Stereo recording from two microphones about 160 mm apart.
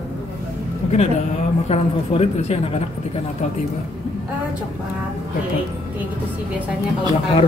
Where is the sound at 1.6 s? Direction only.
40° left (ahead or behind).